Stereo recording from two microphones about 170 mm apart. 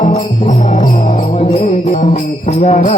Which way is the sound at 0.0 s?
45° left (ahead or behind).